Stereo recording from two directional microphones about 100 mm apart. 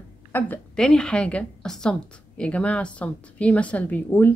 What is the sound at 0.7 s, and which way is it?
A woman's voice, 5° left (ahead or behind).